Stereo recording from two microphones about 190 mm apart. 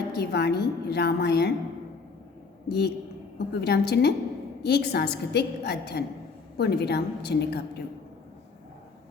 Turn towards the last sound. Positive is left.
turn(degrees=60)  # may be behind; listen again after turning